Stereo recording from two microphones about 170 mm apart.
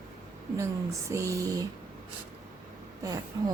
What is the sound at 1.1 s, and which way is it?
Speech, 20° right (ahead or behind).